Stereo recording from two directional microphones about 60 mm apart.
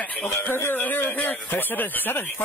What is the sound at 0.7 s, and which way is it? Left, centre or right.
Speech, left.